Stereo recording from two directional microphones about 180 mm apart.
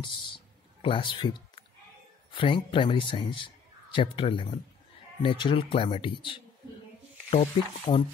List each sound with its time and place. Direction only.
0.8 s a man's voice: 30° left (ahead or behind)
7.2 s music: 40° left (ahead or behind)